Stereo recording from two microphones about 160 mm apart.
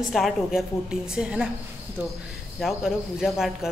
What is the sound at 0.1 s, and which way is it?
Speech, centre (ahead or behind).